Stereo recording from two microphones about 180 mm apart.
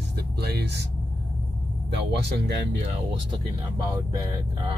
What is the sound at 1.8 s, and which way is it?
Speech, 70° right (ahead or behind).